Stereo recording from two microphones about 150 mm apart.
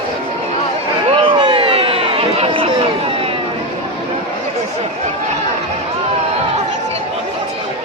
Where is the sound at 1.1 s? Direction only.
35° right (ahead or behind).